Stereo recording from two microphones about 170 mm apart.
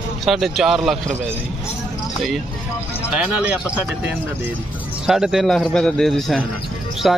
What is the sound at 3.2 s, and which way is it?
Speech, 10° right (ahead or behind).